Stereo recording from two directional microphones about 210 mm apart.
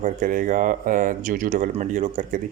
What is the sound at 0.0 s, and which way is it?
Speech, 40° right (ahead or behind).